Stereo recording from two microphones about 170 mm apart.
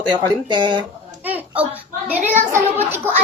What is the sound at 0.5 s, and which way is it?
Speech, 25° right (ahead or behind).